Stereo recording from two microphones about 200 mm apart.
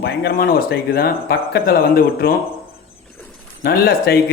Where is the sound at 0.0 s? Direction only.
50° left (ahead or behind).